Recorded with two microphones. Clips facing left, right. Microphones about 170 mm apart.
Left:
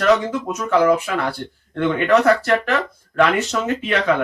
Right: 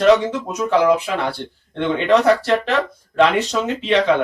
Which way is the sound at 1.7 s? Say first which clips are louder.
Even; 20° right (ahead or behind).